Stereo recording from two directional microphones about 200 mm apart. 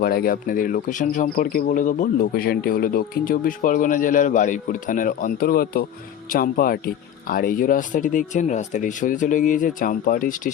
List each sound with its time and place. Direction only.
0.0 s speech: 50° left (ahead or behind)